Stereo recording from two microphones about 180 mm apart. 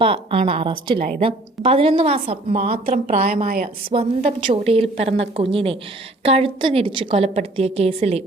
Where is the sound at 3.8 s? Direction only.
30° right (ahead or behind).